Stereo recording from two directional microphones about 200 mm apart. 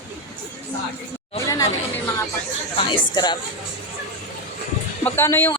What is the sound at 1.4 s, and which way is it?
Chatter, 15° left (ahead or behind).